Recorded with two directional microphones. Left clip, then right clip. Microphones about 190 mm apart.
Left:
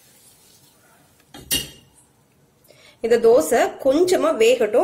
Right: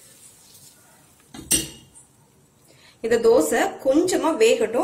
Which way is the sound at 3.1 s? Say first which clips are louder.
Left 3 dB; 45° left (ahead or behind).